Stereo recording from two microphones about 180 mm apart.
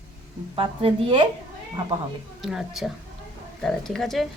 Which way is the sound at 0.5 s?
30° right (ahead or behind).